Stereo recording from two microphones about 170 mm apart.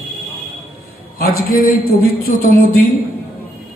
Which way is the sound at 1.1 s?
60° left (ahead or behind).